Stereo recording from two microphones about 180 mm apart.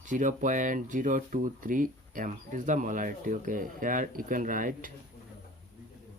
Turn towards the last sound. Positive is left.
turn(degrees=-50)  # may be behind; listen again after turning